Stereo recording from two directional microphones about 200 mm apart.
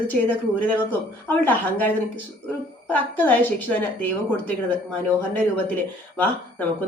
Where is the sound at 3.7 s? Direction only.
10° left (ahead or behind).